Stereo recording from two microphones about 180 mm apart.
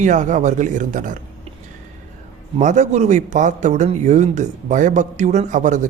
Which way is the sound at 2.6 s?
40° right (ahead or behind).